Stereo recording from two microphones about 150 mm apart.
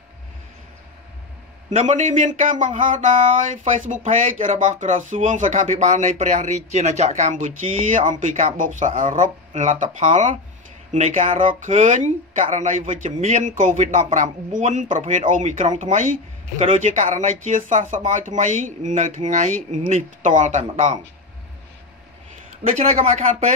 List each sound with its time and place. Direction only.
1.7 s speech: 50° right (ahead or behind)
22.6 s speech: 45° right (ahead or behind)